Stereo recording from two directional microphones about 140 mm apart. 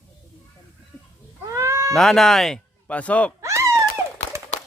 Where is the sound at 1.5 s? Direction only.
20° right (ahead or behind).